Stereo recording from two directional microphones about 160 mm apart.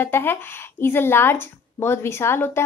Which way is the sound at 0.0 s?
15° left (ahead or behind).